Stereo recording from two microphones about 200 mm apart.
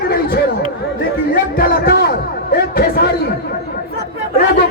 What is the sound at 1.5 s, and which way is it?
Speech, 45° left (ahead or behind).